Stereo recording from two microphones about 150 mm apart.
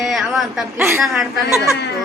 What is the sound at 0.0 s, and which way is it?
Speech, centre (ahead or behind).